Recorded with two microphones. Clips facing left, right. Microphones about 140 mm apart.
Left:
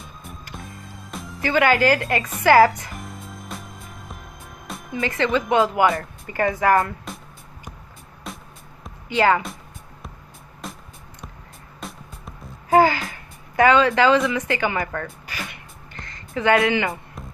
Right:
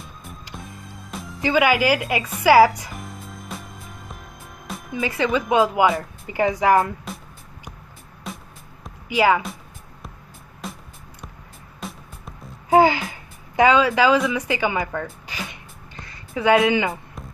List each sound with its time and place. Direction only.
0.0 s music: centre (ahead or behind)
1.4 s a woman's voice: 10° right (ahead or behind)
2.9 s music: centre (ahead or behind)
4.6 s a woman's voice: centre (ahead or behind)
8.3 s music: centre (ahead or behind)
9.1 s a woman's voice: 10° right (ahead or behind)
10.6 s music: centre (ahead or behind)
12.6 s a woman's voice: 20° right (ahead or behind)
15.9 s music: 10° right (ahead or behind)
16.6 s a woman's voice: 15° right (ahead or behind)